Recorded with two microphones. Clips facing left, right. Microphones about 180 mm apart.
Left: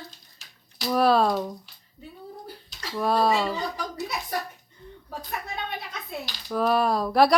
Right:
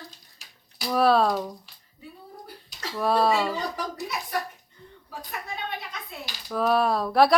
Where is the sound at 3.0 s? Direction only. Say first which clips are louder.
Even; centre (ahead or behind).